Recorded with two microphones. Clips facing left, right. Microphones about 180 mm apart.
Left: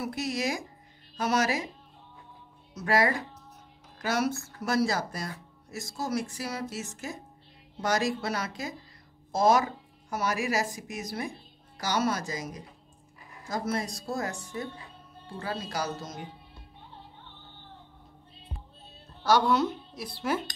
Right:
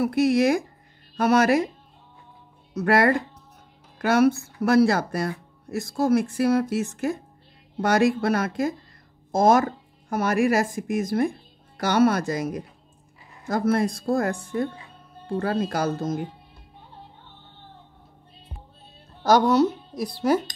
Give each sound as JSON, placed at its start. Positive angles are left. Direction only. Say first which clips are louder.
{"t": 0.0, "sound": "speech", "louder": "right 11 dB", "side_deg": -55}
{"t": 2.7, "sound": "speech", "louder": "right 6 dB", "side_deg": -60}
{"t": 19.2, "sound": "speech", "louder": "right 6 dB", "side_deg": -45}